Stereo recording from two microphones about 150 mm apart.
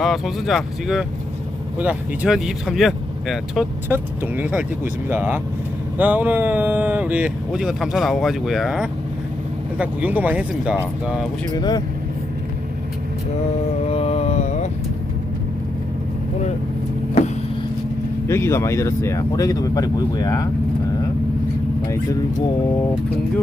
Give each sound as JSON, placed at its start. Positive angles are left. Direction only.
{"t": 0.0, "sound": "speech", "side_deg": 0}
{"t": 3.8, "sound": "speech", "side_deg": -15}
{"t": 11.5, "sound": "speech", "side_deg": 30}
{"t": 13.8, "sound": "a sound", "side_deg": 45}
{"t": 17.2, "sound": "vehicle", "side_deg": 45}
{"t": 18.3, "sound": "speech", "side_deg": 15}
{"t": 21.8, "sound": "speech", "side_deg": 20}